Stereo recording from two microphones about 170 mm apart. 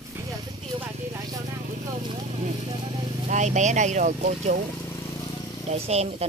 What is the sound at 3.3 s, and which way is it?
Speech, 45° right (ahead or behind).